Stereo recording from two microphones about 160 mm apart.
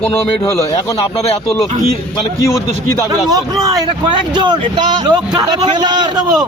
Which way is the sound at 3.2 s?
25° right (ahead or behind).